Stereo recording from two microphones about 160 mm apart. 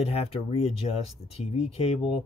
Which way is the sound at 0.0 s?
40° left (ahead or behind).